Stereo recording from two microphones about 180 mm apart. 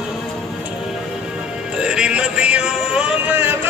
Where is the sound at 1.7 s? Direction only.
5° right (ahead or behind).